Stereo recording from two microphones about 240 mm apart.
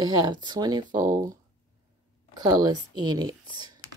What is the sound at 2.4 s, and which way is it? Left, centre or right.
Speech, centre.